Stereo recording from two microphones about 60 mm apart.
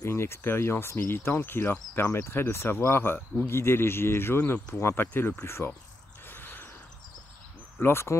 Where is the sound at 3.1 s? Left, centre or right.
Left.